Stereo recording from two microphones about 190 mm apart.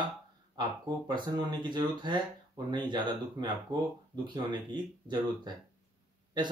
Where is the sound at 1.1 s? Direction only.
20° right (ahead or behind).